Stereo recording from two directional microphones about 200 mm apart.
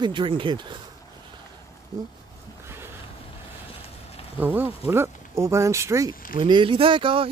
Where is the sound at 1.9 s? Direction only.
20° right (ahead or behind).